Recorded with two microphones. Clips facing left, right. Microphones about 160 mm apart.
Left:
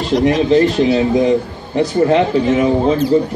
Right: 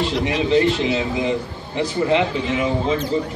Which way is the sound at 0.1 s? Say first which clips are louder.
Left 11 dB; 45° left (ahead or behind).